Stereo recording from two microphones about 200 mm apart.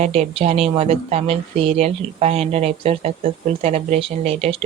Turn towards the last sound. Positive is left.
turn(degrees=-30)  # may be behind; listen again after turning